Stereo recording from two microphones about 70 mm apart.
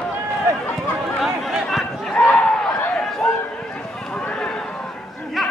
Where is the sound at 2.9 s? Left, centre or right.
Centre.